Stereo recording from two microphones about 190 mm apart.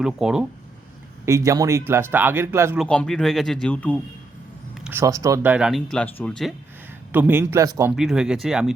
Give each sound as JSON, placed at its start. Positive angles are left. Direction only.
{"t": 0.0, "sound": "speech", "side_deg": -5}
{"t": 1.2, "sound": "speech", "side_deg": -15}
{"t": 2.7, "sound": "speech", "side_deg": 5}
{"t": 4.7, "sound": "speech", "side_deg": -5}
{"t": 7.1, "sound": "speech", "side_deg": -10}
{"t": 7.9, "sound": "speech", "side_deg": -5}